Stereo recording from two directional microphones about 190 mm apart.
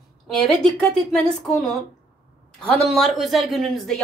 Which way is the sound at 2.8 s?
Centre (ahead or behind).